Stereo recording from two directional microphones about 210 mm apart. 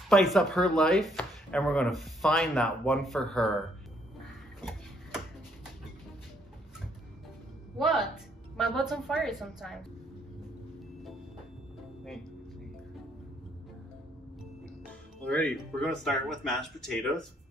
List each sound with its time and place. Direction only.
0.1 s speech: centre (ahead or behind)
4.2 s a sound: centre (ahead or behind)
7.7 s speech: centre (ahead or behind)
14.9 s speech: 5° left (ahead or behind)